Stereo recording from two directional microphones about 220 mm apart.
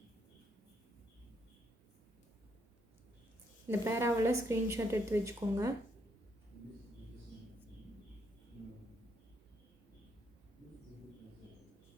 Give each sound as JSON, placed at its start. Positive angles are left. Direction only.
{"t": 3.7, "sound": "a woman's voice", "side_deg": -10}